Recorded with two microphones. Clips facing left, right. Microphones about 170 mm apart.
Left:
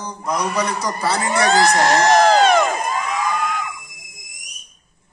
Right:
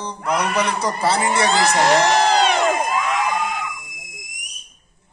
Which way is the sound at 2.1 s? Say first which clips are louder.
Left 4 dB; 50° left (ahead or behind).